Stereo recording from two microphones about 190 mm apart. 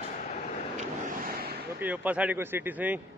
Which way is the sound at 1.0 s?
50° right (ahead or behind).